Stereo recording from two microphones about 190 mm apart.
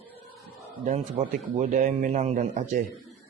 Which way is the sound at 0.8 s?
40° right (ahead or behind).